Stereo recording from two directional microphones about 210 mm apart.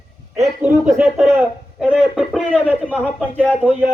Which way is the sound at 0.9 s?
5° right (ahead or behind).